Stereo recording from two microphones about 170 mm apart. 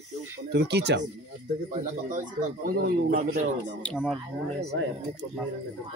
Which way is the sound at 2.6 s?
60° right (ahead or behind).